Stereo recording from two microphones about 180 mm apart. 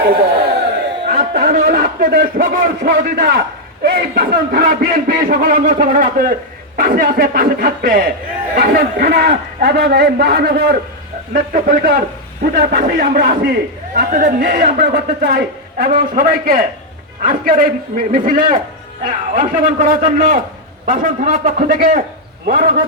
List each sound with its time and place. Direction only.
1.0 s a man's voice: 55° right (ahead or behind)